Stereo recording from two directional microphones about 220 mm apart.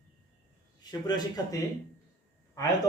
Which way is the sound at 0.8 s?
20° left (ahead or behind).